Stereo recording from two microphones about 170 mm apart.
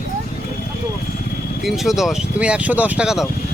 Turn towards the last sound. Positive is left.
turn(degrees=-5)  # may be behind; listen again after turning